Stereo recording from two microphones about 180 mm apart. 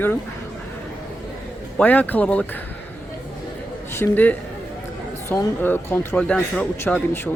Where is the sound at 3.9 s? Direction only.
10° left (ahead or behind).